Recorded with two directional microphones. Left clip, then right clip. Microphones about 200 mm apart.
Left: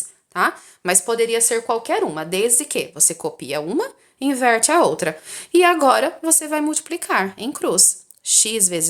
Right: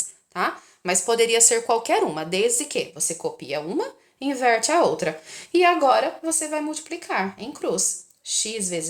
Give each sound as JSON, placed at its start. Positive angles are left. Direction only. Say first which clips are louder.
{"t": 0.3, "sound": "speech", "louder": "left 6 dB", "side_deg": 25}
{"t": 1.0, "sound": "a woman's voice", "louder": "right 3 dB", "side_deg": 15}